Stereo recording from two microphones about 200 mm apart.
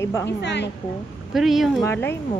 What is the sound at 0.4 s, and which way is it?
Speech, 60° left (ahead or behind).